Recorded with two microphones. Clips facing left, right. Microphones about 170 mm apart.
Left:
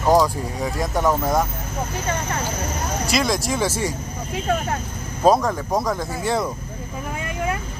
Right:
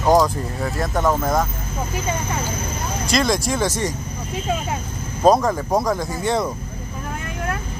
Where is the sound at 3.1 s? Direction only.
5° left (ahead or behind).